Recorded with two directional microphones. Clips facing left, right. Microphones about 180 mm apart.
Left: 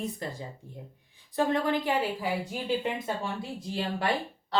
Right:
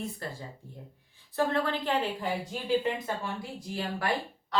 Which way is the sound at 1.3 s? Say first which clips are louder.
Left 2 dB; 15° left (ahead or behind).